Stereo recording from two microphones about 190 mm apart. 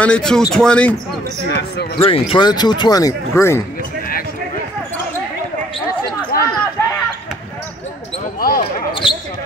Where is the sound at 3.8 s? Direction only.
50° left (ahead or behind).